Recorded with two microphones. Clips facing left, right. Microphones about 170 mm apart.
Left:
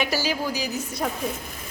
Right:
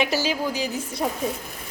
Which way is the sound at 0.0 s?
20° right (ahead or behind).